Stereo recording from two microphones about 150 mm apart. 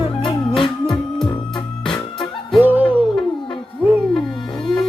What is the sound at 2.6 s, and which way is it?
Music, 10° right (ahead or behind).